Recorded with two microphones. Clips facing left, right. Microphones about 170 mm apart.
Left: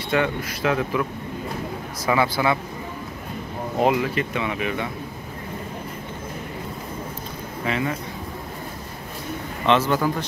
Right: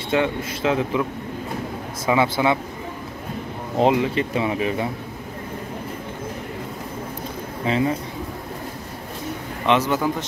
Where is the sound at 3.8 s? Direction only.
25° right (ahead or behind).